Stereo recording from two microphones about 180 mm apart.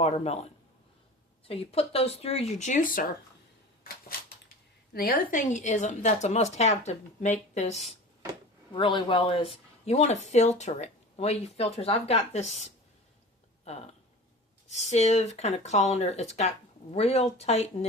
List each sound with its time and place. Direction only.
0.0 s speech: 35° left (ahead or behind)
1.5 s speech: 35° left (ahead or behind); by 3.1 s 50° left (ahead or behind)
4.9 s speech: 55° left (ahead or behind); by 7.9 s 40° left (ahead or behind)
8.7 s speech: 25° left (ahead or behind)
14.7 s speech: 40° left (ahead or behind)